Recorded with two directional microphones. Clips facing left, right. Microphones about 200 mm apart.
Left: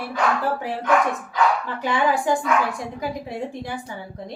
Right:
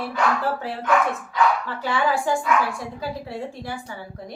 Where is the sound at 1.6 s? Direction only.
20° left (ahead or behind).